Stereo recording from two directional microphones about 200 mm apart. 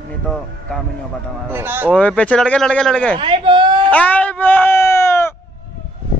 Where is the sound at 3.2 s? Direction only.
25° right (ahead or behind).